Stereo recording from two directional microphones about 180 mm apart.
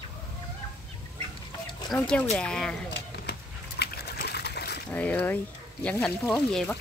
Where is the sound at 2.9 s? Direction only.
65° left (ahead or behind).